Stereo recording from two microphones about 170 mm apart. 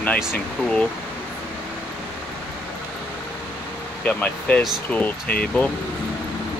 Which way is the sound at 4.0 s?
10° left (ahead or behind).